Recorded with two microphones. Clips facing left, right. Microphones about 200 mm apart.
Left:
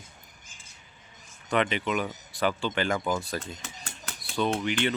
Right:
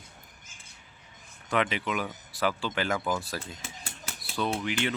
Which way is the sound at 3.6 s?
5° right (ahead or behind).